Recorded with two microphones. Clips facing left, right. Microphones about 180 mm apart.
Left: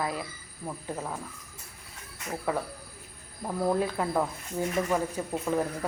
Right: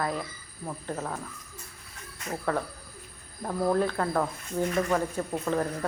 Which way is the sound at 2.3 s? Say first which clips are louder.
Right 1 dB; 10° left (ahead or behind).